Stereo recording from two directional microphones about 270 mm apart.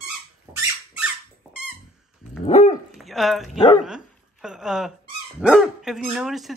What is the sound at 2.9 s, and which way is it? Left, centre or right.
A woman's voice, centre.